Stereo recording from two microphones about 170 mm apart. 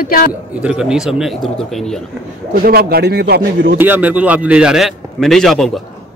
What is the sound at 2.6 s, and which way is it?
Speech, 65° right (ahead or behind).